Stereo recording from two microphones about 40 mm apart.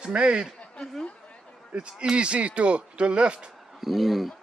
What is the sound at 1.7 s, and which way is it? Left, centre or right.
Speech, right.